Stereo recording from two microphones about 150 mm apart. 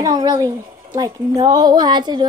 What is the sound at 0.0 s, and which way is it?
A woman's voice, 25° right (ahead or behind).